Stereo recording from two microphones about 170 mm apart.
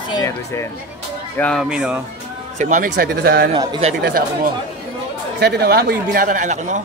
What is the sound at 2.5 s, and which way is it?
Speech, 50° right (ahead or behind).